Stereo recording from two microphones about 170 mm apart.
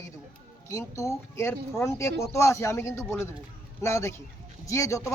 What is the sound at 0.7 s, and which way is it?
A man's voice, 20° left (ahead or behind).